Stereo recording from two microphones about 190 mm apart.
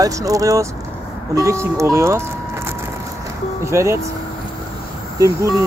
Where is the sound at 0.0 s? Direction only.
20° right (ahead or behind).